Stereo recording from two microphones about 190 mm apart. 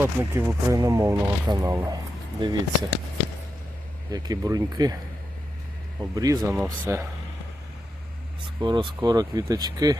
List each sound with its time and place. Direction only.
0.0 s speech: 10° right (ahead or behind)
4.1 s speech: 20° right (ahead or behind)
6.0 s speech: 20° right (ahead or behind)
8.4 s speech: 25° right (ahead or behind)